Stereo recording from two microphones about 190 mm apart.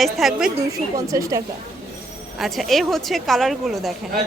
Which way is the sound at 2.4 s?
Centre (ahead or behind).